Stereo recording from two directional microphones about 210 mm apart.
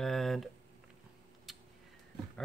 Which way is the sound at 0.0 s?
Centre (ahead or behind).